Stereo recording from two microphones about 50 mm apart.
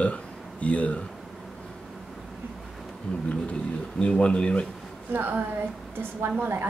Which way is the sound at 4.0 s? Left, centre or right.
Left.